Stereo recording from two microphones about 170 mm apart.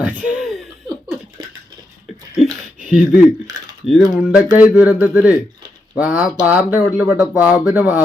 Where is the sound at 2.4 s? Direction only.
5° right (ahead or behind).